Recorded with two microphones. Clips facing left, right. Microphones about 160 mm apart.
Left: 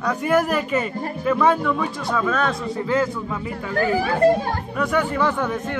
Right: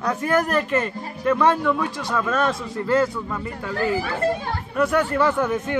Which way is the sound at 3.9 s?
40° left (ahead or behind).